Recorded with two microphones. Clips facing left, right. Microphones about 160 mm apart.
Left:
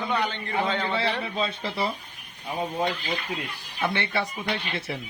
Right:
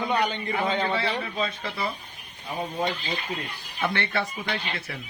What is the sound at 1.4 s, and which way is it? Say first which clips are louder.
Speech: left 4 dB; 30° left (ahead or behind).